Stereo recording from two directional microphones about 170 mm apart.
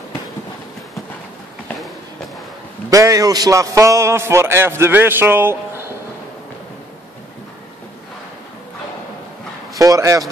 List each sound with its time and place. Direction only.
2.9 s a man's voice: 20° right (ahead or behind)
9.8 s speech: 20° right (ahead or behind)